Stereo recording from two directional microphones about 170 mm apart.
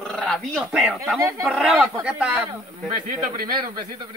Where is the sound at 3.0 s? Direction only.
50° right (ahead or behind).